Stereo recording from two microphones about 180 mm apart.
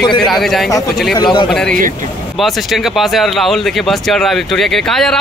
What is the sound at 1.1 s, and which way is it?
Speech, 25° left (ahead or behind).